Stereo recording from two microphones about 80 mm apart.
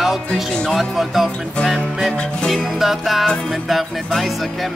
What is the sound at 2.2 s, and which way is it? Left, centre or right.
Music, centre.